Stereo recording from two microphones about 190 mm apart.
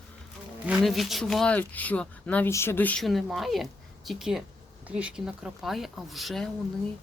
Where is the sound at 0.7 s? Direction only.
Centre (ahead or behind).